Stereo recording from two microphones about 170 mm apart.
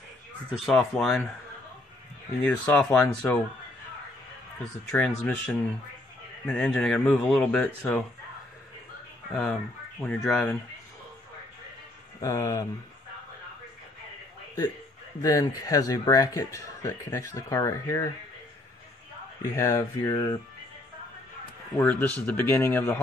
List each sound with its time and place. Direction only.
0.7 s speech: centre (ahead or behind)
2.4 s speech: 10° left (ahead or behind)
4.8 s speech: 5° left (ahead or behind)
9.3 s speech: 5° left (ahead or behind)
12.2 s speech: 20° left (ahead or behind)
15.2 s speech: 20° left (ahead or behind)
19.5 s speech: 15° left (ahead or behind)
21.7 s speech: 10° left (ahead or behind)